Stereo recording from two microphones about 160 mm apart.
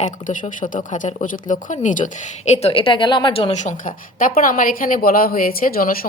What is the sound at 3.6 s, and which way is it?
A woman's voice, 50° left (ahead or behind).